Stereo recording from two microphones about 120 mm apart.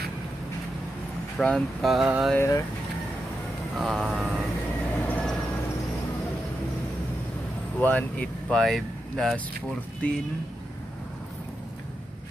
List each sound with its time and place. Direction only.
1.4 s speech: 5° left (ahead or behind)
2.3 s speech: 25° left (ahead or behind)
3.7 s speech: centre (ahead or behind)
5.0 s vehicle: 10° left (ahead or behind)
7.8 s speech: 10° left (ahead or behind)